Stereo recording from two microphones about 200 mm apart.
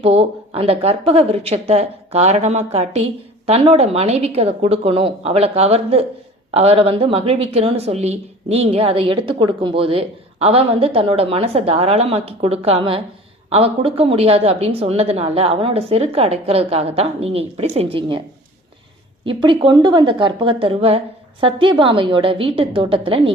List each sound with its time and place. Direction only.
0.0 s a woman's voice: 30° right (ahead or behind)
19.2 s a woman's voice: 25° right (ahead or behind)